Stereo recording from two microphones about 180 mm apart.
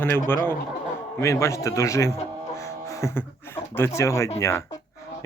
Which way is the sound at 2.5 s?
15° left (ahead or behind).